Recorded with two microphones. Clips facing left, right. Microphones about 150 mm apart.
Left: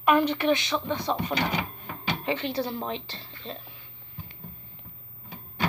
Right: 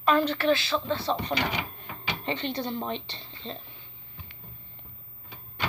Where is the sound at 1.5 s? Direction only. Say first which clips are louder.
Left 3 dB; 45° left (ahead or behind).